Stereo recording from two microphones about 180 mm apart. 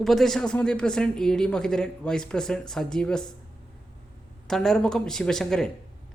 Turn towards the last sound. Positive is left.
turn(degrees=5)  # may be behind; listen again after turning